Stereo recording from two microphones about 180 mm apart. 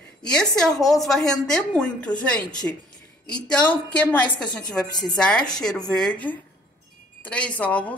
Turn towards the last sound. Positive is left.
turn(degrees=10)  # may be behind; listen again after turning